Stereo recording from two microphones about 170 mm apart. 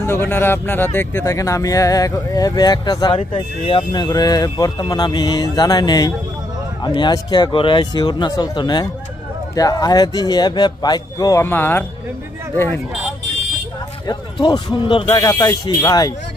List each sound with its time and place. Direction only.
0.0 s speech: 15° left (ahead or behind)
14.0 s speech: 25° left (ahead or behind)